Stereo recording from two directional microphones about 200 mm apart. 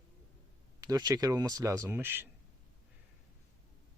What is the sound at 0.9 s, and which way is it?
Speech, 20° right (ahead or behind).